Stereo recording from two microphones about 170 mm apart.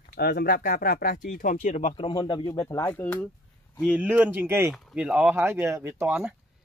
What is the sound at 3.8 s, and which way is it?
Speech, 5° right (ahead or behind).